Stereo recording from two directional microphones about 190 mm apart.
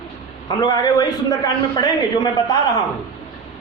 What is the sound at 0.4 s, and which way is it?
A man's voice, 20° left (ahead or behind).